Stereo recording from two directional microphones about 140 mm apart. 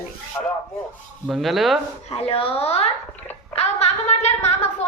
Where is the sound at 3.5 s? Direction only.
50° left (ahead or behind).